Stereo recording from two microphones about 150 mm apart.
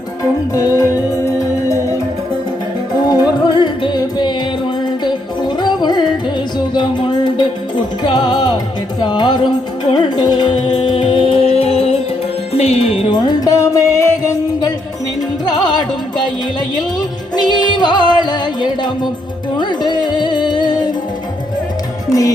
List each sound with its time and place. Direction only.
0.5 s music: 20° left (ahead or behind)
3.1 s music: 25° left (ahead or behind); by 13.1 s 45° left (ahead or behind)
13.1 s music: 25° left (ahead or behind)
17.3 s music: 30° left (ahead or behind)